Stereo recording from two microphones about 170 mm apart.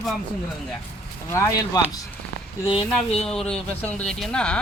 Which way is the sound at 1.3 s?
20° left (ahead or behind).